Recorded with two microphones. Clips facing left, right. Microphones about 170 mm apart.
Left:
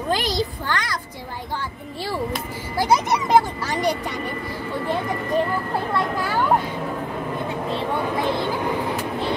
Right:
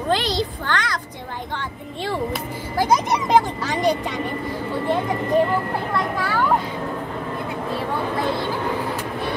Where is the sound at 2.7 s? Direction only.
10° left (ahead or behind).